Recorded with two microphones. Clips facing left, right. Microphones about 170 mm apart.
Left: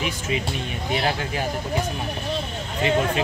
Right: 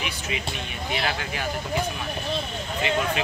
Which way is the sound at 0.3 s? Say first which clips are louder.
Left 5 dB; 35° left (ahead or behind).